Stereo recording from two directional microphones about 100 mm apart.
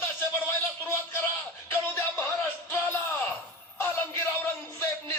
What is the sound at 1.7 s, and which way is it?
Music, 20° left (ahead or behind).